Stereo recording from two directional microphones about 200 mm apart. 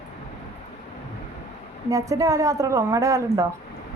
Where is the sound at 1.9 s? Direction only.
15° right (ahead or behind).